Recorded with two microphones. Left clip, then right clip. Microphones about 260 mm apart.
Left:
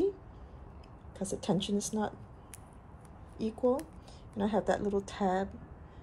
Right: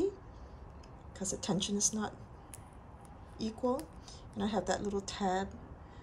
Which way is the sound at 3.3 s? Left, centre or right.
Centre.